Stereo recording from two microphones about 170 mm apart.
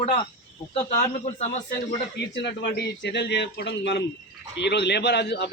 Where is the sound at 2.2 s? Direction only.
90° left.